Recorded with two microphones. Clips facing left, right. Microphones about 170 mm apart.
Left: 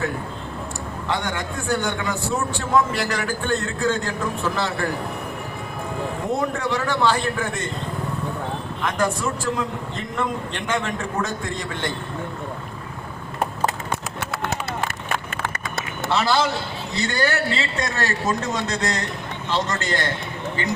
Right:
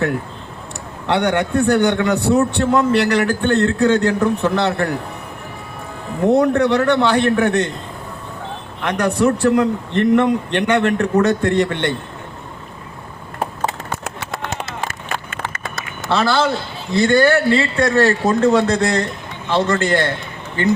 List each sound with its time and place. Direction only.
1.0 s a man's voice: 70° right (ahead or behind)
6.2 s a man's voice: 70° right (ahead or behind)
8.8 s a man's voice: 70° right (ahead or behind)
16.0 s speech: 15° left (ahead or behind)
17.0 s a man's voice: 55° right (ahead or behind)